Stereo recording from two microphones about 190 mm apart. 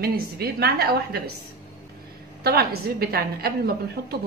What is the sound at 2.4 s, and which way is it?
A woman's voice, 55° right (ahead or behind).